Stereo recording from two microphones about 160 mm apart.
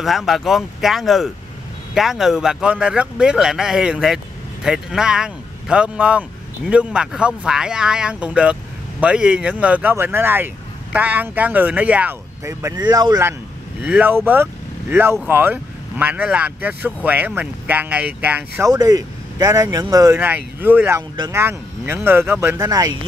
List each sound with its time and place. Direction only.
0.0 s speech: centre (ahead or behind)
12.4 s speech: 25° right (ahead or behind)
13.3 s speech: 5° right (ahead or behind)
18.7 s speech: 25° right (ahead or behind)
20.2 s speech: 10° right (ahead or behind)